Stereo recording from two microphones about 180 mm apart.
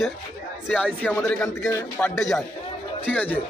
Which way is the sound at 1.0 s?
10° left (ahead or behind).